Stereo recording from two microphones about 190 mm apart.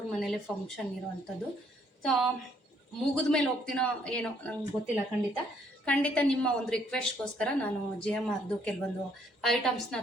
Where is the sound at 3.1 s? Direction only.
5° left (ahead or behind).